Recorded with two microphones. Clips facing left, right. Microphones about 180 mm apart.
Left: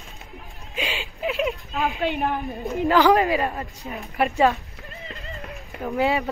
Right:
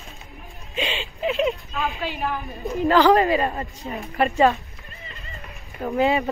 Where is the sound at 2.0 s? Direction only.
60° left (ahead or behind).